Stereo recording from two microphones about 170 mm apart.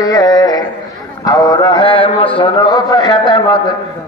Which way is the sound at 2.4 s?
25° left (ahead or behind).